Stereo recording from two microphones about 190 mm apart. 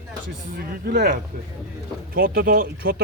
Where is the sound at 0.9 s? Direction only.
55° right (ahead or behind).